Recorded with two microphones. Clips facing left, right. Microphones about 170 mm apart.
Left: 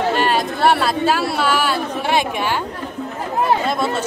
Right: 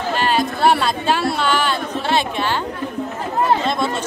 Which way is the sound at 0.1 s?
Centre (ahead or behind).